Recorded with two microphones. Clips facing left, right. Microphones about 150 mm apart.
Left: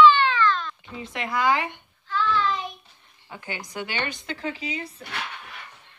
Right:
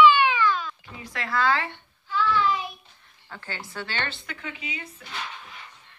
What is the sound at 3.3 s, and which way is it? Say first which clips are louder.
Speech: left 2 dB; 15° left (ahead or behind).